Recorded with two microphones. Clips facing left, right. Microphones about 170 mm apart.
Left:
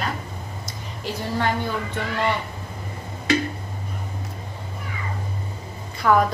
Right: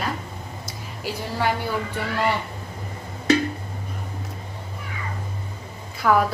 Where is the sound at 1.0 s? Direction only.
10° right (ahead or behind).